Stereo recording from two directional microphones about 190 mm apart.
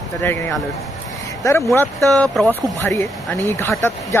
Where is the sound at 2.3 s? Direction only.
5° left (ahead or behind).